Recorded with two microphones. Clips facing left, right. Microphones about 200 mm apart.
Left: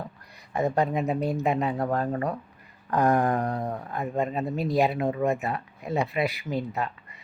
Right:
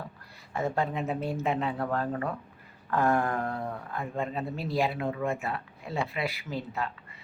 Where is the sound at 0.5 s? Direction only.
15° left (ahead or behind).